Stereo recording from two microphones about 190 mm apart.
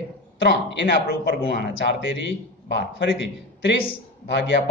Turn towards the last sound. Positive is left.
turn(degrees=65)  # may be behind; listen again after turning